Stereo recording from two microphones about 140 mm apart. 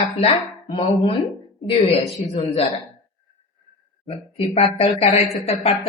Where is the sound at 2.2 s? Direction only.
45° left (ahead or behind).